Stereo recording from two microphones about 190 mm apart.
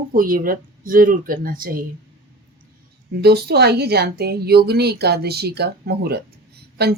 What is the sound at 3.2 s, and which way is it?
A woman's voice, 60° right (ahead or behind).